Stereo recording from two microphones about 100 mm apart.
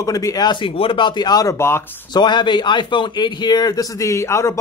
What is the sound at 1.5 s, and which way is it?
Speech, 25° left (ahead or behind).